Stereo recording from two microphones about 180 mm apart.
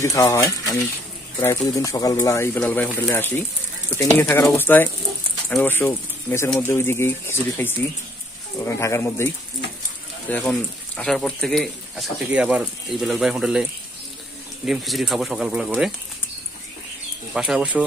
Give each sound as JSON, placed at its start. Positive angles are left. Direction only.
{"t": 0.0, "sound": "speech", "side_deg": 20}
{"t": 10.3, "sound": "speech", "side_deg": 10}
{"t": 14.7, "sound": "speech", "side_deg": 0}
{"t": 17.3, "sound": "speech", "side_deg": -5}